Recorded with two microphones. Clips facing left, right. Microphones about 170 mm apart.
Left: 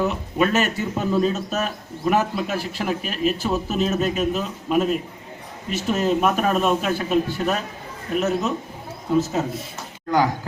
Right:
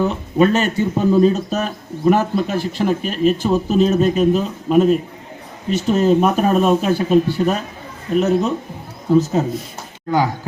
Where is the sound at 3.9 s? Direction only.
35° right (ahead or behind).